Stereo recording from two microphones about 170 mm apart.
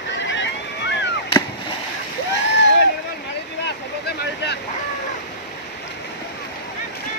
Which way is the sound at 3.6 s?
80° left.